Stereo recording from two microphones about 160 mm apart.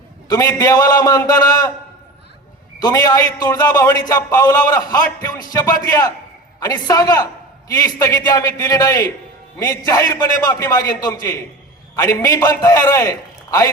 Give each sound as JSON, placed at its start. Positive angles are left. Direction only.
{"t": 0.3, "sound": "a man's voice", "side_deg": 20}
{"t": 2.8, "sound": "a man's voice", "side_deg": 25}